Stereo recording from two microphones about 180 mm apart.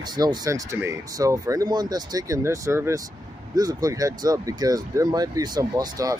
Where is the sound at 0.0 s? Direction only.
25° right (ahead or behind).